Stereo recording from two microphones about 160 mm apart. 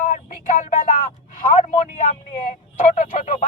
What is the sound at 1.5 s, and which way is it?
Speech, 50° left (ahead or behind).